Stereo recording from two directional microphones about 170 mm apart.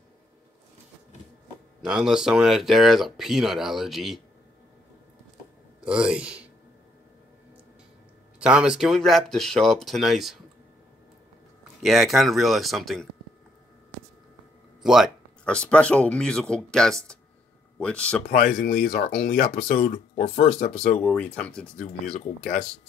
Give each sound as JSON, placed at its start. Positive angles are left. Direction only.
{"t": 1.9, "sound": "speech", "side_deg": -5}
{"t": 5.9, "sound": "speech", "side_deg": -5}
{"t": 8.4, "sound": "speech", "side_deg": -5}
{"t": 11.8, "sound": "speech", "side_deg": 0}
{"t": 14.8, "sound": "speech", "side_deg": 0}
{"t": 18.3, "sound": "speech", "side_deg": 60}
{"t": 21.0, "sound": "speech", "side_deg": 10}